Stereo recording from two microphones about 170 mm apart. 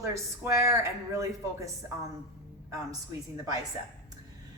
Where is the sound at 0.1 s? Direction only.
15° right (ahead or behind).